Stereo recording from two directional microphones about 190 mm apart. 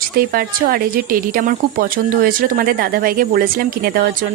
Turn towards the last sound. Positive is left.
turn(degrees=-50)  # may be behind; listen again after turning